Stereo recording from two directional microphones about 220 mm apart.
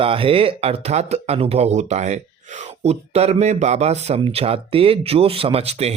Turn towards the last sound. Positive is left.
turn(degrees=-30)  # may be behind; listen again after turning